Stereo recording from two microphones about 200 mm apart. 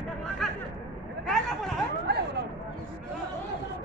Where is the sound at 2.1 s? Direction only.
55° right (ahead or behind).